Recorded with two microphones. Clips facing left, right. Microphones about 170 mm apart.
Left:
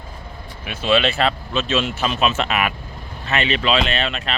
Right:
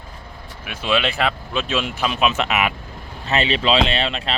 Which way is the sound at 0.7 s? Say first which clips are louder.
Left 3 dB; 10° right (ahead or behind).